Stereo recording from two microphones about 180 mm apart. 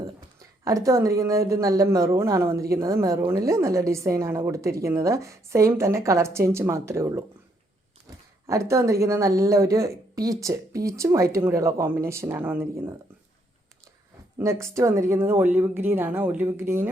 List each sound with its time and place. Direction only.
0.0 s a woman's voice: 20° right (ahead or behind)
8.4 s a woman's voice: 15° right (ahead or behind)
14.3 s a woman's voice: 15° right (ahead or behind)